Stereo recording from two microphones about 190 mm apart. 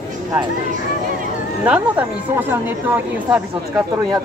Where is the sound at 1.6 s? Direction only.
5° right (ahead or behind).